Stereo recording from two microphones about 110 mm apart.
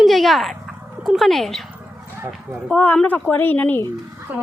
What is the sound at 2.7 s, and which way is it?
A woman's voice, 15° left (ahead or behind).